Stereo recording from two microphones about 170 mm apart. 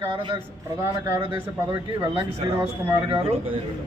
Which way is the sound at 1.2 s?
30° right (ahead or behind).